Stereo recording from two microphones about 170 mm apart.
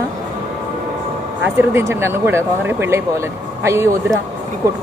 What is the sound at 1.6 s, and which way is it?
Speech, 15° right (ahead or behind).